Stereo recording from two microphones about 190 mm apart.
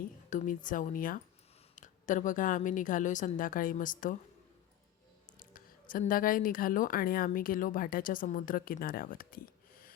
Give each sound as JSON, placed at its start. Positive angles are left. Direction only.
{"t": 0.0, "sound": "a woman's voice", "side_deg": 40}
{"t": 5.4, "sound": "a woman's voice", "side_deg": 45}